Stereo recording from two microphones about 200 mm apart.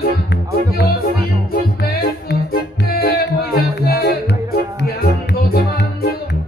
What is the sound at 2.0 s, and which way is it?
Music, 50° left (ahead or behind).